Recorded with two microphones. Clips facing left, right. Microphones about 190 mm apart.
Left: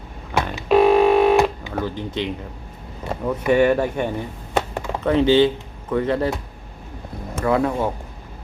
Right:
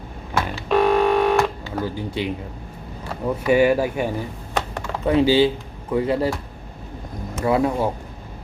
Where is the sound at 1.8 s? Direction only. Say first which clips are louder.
Even; 10° right (ahead or behind).